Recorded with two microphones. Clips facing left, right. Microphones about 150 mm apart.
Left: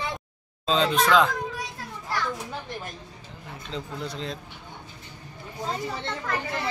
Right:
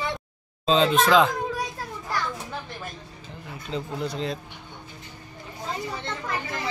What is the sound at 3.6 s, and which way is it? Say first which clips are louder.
Speech: right 4 dB; centre (ahead or behind).